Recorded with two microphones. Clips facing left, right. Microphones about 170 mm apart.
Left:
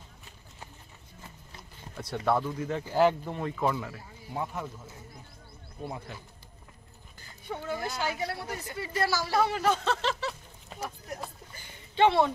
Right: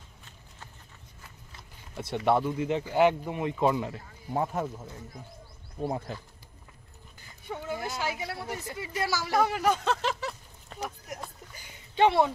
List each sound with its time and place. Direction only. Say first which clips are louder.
2.0 s speech: right 2 dB; 25° right (ahead or behind)
4.3 s speech: right 5 dB; 40° right (ahead or behind)
5.8 s speech: right 7 dB; 40° right (ahead or behind)
7.4 s speech: even; 10° right (ahead or behind)
12.0 s speech: even; 10° right (ahead or behind)